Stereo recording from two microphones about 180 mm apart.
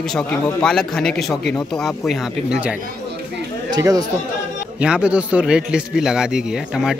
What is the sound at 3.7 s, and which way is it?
Speech, 20° right (ahead or behind).